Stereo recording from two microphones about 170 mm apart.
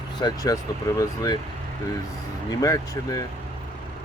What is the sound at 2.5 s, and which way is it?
Speech, 20° left (ahead or behind).